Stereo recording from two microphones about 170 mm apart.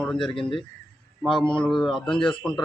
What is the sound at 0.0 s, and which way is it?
Speech, 5° left (ahead or behind).